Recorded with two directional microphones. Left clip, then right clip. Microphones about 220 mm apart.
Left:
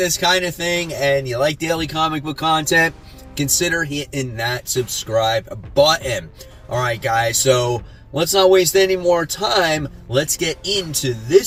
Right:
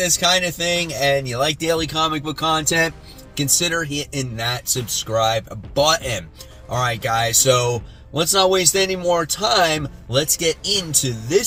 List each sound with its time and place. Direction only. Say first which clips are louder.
0.0 s speech: left 1 dB; 15° right (ahead or behind)
3.9 s speech: left 1 dB; 15° right (ahead or behind)